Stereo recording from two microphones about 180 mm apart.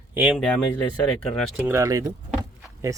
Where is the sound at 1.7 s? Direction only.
15° right (ahead or behind).